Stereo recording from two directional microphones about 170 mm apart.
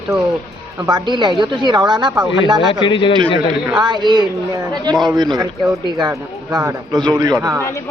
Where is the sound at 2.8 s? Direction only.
30° left (ahead or behind).